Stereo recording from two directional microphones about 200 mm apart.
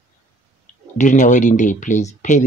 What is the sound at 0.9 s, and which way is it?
Speech, 40° left (ahead or behind).